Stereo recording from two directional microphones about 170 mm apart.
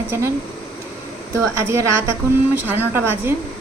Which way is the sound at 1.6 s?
15° right (ahead or behind).